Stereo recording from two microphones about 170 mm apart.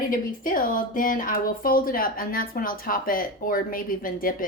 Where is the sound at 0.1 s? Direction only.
55° left (ahead or behind).